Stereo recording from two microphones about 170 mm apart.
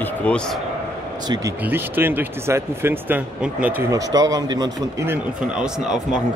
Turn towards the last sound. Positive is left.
turn(degrees=-5)  # may be behind; listen again after turning